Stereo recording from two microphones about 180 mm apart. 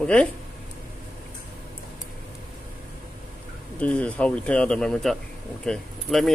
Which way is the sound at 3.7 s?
5° left (ahead or behind).